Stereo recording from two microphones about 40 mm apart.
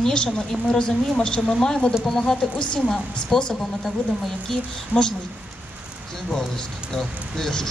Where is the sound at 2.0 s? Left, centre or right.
Centre.